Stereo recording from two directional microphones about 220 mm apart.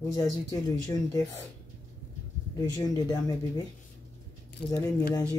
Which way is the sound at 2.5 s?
15° left (ahead or behind).